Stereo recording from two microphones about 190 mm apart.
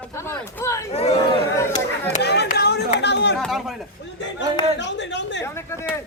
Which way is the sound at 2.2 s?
60° left (ahead or behind).